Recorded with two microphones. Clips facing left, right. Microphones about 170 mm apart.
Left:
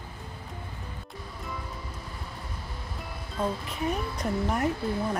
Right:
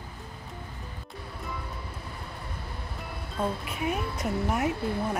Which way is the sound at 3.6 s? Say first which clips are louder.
Even; 5° right (ahead or behind).